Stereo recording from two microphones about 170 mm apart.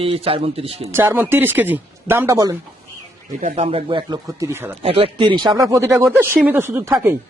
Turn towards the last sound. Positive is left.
turn(degrees=-15)  # may be behind; listen again after turning